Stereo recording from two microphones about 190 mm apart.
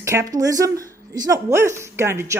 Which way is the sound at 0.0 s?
15° right (ahead or behind).